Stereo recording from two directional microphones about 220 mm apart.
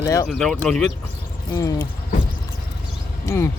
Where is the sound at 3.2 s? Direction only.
10° left (ahead or behind).